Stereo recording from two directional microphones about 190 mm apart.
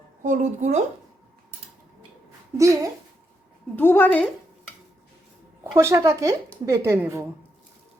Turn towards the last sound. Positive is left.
turn(degrees=-15)  # may be behind; listen again after turning